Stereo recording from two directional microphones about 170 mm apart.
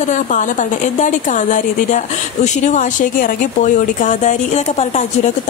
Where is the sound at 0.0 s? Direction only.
45° left (ahead or behind).